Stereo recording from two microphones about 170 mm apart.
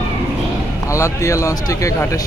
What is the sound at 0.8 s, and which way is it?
Speech, 20° left (ahead or behind).